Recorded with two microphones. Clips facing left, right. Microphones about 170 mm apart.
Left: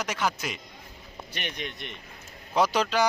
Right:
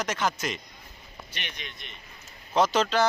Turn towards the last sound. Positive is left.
turn(degrees=10)  # may be behind; listen again after turning